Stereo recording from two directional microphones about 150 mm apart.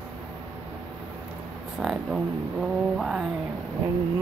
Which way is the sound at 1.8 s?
5° right (ahead or behind).